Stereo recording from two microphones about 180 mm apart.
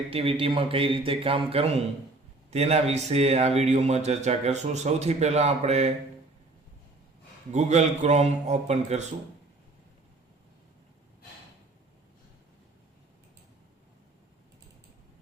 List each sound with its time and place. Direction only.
0.1 s speech: 30° right (ahead or behind)
7.5 s speech: 40° right (ahead or behind)